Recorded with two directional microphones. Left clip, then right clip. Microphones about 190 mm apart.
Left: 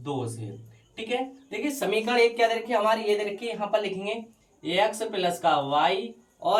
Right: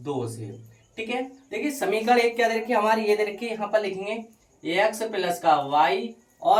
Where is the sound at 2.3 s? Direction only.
15° right (ahead or behind).